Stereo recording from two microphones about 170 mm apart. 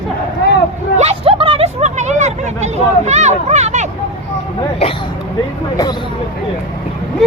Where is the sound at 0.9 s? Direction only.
35° right (ahead or behind).